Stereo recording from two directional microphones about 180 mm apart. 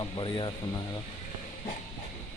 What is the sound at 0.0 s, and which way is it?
Speech, 25° left (ahead or behind).